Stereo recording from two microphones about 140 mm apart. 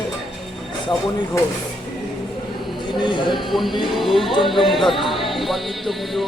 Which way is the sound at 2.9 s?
35° left (ahead or behind).